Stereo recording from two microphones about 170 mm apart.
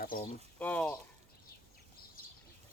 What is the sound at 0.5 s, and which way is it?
Speech, 10° left (ahead or behind).